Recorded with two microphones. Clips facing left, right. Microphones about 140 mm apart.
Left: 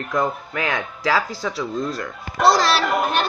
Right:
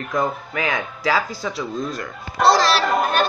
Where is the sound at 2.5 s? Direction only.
35° right (ahead or behind).